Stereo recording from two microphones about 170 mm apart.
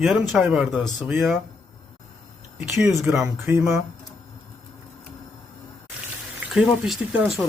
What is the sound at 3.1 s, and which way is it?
Speech, 15° right (ahead or behind).